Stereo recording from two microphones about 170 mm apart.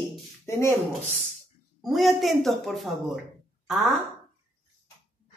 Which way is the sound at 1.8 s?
Centre (ahead or behind).